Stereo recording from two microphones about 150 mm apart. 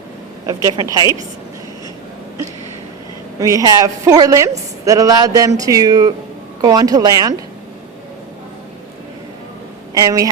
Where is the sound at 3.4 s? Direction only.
20° right (ahead or behind).